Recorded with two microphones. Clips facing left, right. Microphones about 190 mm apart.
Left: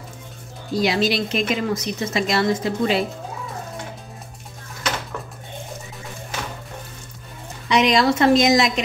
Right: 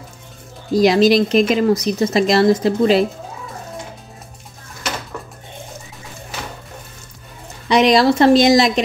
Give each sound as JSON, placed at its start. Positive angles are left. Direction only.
{"t": 0.7, "sound": "speech", "side_deg": -40}
{"t": 7.6, "sound": "speech", "side_deg": -35}